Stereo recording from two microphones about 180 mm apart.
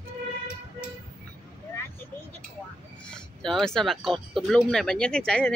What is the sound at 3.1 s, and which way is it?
Speech, centre (ahead or behind).